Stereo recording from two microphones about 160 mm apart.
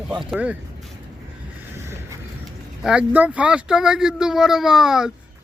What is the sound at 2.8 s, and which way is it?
Speech, 5° right (ahead or behind).